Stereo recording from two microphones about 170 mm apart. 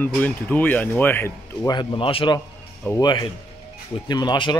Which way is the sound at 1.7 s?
30° left (ahead or behind).